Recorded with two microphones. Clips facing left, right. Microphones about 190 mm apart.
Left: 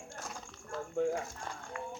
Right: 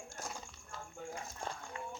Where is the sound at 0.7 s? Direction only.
70° left (ahead or behind).